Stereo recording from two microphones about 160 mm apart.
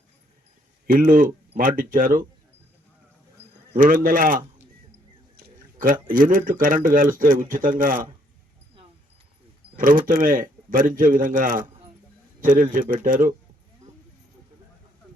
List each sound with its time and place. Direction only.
0.9 s a man's voice: 60° right (ahead or behind)
3.8 s a man's voice: 60° right (ahead or behind)
9.7 s a man's voice: 60° right (ahead or behind)